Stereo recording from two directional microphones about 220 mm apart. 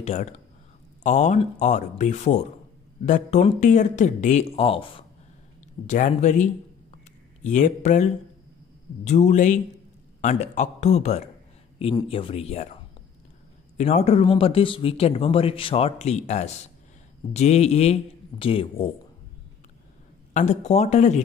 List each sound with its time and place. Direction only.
0.0 s speech: 30° left (ahead or behind)
5.9 s speech: 35° left (ahead or behind)
20.3 s speech: 30° left (ahead or behind)